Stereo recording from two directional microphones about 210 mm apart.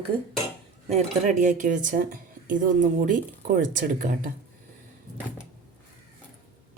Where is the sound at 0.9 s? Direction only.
35° right (ahead or behind).